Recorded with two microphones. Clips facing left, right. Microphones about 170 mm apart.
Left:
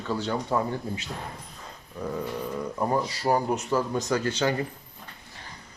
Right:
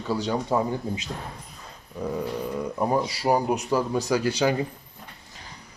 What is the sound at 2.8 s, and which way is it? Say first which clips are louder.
A man's voice: right 2 dB; 10° right (ahead or behind).